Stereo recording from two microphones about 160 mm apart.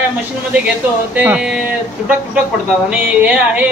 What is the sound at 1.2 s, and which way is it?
Speech, 5° right (ahead or behind).